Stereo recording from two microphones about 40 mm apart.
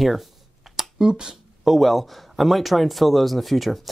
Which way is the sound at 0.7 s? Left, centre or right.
Centre.